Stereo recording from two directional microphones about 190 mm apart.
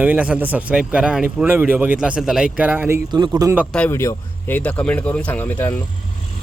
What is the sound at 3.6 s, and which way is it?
A man's voice, 10° left (ahead or behind).